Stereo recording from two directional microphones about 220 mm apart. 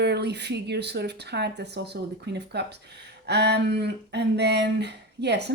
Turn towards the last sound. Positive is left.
turn(degrees=-50)  # may be behind; listen again after turning